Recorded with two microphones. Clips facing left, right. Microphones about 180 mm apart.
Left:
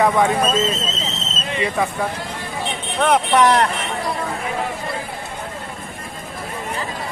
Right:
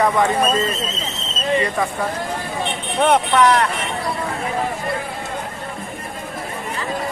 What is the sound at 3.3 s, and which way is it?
Speech, 20° left (ahead or behind).